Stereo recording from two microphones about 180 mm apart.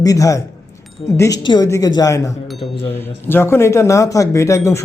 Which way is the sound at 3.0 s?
10° left (ahead or behind).